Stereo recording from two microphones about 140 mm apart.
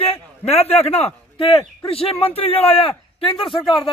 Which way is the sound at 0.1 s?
50° left (ahead or behind).